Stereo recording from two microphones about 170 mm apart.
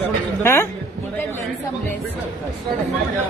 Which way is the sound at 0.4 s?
15° left (ahead or behind).